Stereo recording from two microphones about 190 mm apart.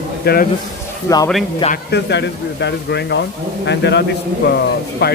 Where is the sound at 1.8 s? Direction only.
65° left (ahead or behind).